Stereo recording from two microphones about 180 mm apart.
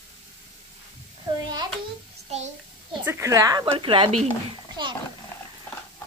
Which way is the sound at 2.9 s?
10° right (ahead or behind).